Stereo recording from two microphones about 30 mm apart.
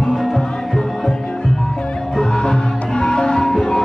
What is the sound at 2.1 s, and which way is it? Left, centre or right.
Music, left.